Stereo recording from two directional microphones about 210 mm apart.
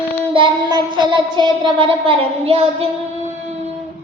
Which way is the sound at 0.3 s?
20° right (ahead or behind).